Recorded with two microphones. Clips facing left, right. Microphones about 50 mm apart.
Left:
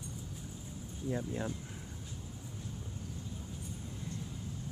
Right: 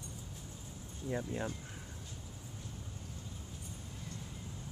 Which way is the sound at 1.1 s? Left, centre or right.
Centre.